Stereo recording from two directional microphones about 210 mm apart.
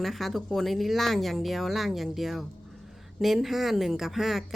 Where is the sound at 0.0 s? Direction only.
Centre (ahead or behind).